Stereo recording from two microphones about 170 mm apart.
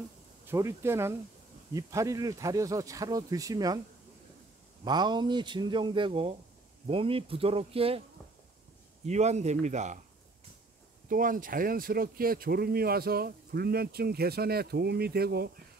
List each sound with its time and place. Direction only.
0.5 s speech: 15° right (ahead or behind)
4.8 s speech: 25° right (ahead or behind)
9.0 s speech: 40° right (ahead or behind)
11.1 s speech: 55° right (ahead or behind)